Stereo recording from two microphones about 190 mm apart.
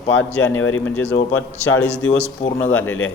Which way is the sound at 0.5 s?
90° left.